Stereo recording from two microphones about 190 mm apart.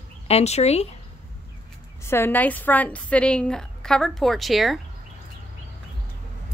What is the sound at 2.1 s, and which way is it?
A woman's voice, 10° left (ahead or behind).